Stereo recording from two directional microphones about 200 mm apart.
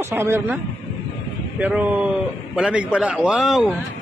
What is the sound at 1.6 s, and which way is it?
A man's voice, 10° right (ahead or behind).